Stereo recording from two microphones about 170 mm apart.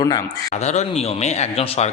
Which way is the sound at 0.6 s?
40° left (ahead or behind).